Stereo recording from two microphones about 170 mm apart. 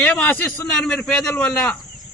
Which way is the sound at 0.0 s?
5° left (ahead or behind).